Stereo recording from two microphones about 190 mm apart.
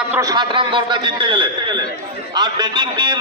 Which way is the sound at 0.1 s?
20° right (ahead or behind).